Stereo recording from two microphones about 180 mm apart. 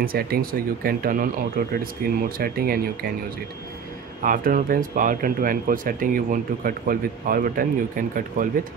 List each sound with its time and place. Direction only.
0.0 s speech: 55° right (ahead or behind)
4.2 s speech: 50° right (ahead or behind)